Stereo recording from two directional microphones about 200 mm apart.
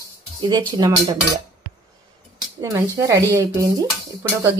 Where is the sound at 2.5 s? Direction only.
15° right (ahead or behind).